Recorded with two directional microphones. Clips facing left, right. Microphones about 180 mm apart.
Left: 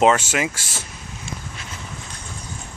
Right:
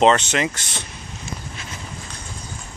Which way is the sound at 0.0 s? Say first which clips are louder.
Right 1 dB; 5° left (ahead or behind).